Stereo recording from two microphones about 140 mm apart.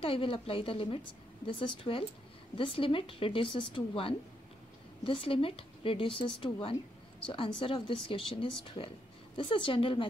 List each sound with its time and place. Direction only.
0.0 s a woman's voice: 40° left (ahead or behind)